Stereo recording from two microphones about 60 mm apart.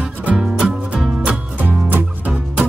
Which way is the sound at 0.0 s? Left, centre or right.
Right.